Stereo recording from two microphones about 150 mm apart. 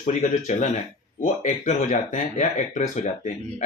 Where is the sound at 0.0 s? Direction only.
55° left (ahead or behind).